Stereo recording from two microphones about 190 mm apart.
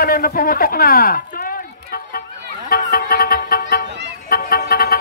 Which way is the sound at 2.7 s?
50° left (ahead or behind).